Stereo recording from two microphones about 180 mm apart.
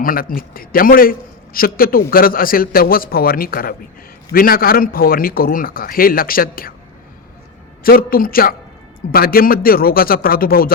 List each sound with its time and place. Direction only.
0.0 s a man's voice: 50° left (ahead or behind)
7.9 s a man's voice: 55° left (ahead or behind)